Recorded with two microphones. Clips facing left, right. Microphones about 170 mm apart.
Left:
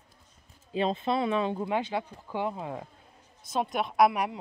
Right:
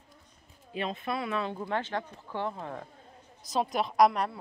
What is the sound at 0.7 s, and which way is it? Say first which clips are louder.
Speech: left 6 dB; 30° left (ahead or behind).